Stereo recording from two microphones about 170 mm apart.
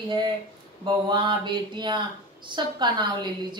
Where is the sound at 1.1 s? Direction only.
25° right (ahead or behind).